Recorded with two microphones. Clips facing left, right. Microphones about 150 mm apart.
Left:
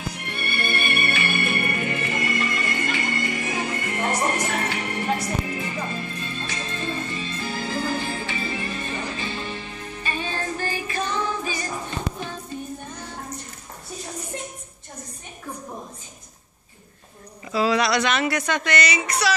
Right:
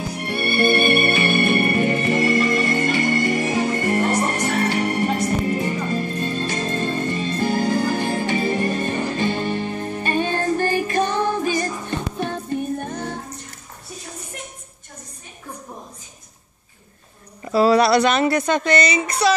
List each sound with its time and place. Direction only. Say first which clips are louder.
0.9 s music: right 7 dB; 50° right (ahead or behind)
1.7 s music: right 8 dB; 40° right (ahead or behind); by 13.1 s 55° right (ahead or behind)
17.5 s speech: right 6 dB; 35° right (ahead or behind)